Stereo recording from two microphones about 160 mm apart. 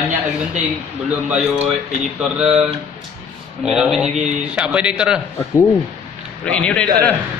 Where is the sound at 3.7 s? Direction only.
5° right (ahead or behind).